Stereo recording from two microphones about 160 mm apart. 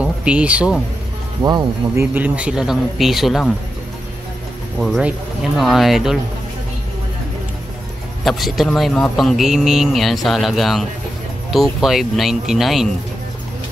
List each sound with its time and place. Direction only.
0.0 s speech: 5° right (ahead or behind)
1.4 s speech: 25° right (ahead or behind)
2.1 s a man's voice: 10° right (ahead or behind)
4.7 s a man's voice: centre (ahead or behind)
8.2 s a man's voice: centre (ahead or behind)